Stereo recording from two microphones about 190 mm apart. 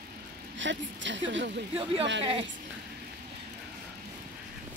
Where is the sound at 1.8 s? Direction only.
30° right (ahead or behind).